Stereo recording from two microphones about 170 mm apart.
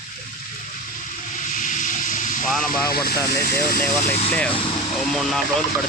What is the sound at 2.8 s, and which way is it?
Speech, 65° left (ahead or behind).